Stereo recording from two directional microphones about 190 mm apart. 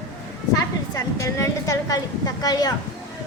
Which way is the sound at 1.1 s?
15° left (ahead or behind).